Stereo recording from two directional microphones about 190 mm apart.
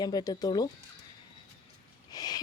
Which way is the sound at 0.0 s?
20° left (ahead or behind).